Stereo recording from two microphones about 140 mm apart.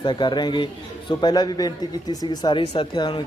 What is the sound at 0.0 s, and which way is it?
Speech, 35° left (ahead or behind).